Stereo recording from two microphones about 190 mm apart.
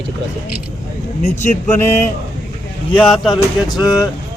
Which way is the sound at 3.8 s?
20° left (ahead or behind).